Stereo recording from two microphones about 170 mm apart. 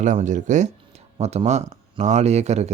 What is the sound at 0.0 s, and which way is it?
Speech, 45° right (ahead or behind).